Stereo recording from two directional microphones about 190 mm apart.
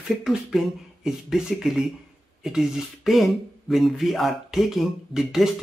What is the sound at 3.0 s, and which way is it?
Speech, centre (ahead or behind).